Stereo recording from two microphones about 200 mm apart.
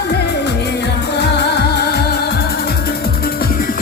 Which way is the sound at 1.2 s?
55° left (ahead or behind).